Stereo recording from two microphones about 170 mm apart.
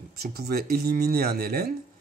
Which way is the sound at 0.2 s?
65° right (ahead or behind).